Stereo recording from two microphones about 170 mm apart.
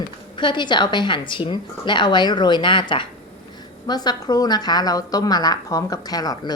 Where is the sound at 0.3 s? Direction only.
25° left (ahead or behind).